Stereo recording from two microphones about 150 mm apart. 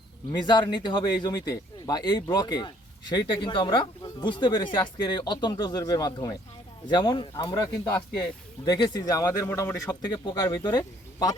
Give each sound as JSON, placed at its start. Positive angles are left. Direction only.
{"t": 0.3, "sound": "a man's voice", "side_deg": 30}